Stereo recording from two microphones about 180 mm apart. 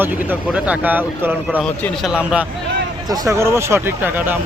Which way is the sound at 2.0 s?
5° right (ahead or behind).